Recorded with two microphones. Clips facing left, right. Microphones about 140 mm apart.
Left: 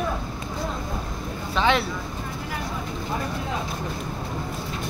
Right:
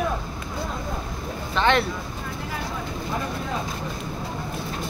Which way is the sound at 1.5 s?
5° left (ahead or behind).